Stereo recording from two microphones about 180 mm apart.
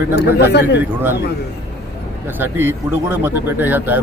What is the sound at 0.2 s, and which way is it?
Speech, 70° left (ahead or behind).